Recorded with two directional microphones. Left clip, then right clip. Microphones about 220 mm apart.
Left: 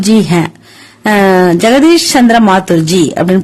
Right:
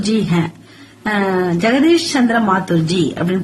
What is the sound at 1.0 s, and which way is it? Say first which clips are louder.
A woman's voice: left 10 dB; 45° left (ahead or behind).